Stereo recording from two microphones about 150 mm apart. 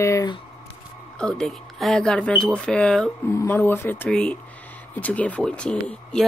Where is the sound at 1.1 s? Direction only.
5° left (ahead or behind).